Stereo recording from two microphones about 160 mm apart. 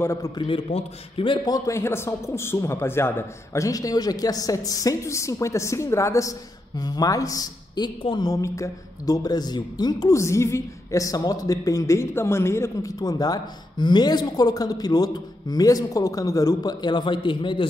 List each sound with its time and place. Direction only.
0.0 s a man's voice: 15° left (ahead or behind)
0.4 s speech: 35° left (ahead or behind)